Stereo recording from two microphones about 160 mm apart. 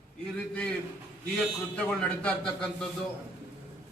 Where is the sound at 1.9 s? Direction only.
10° left (ahead or behind).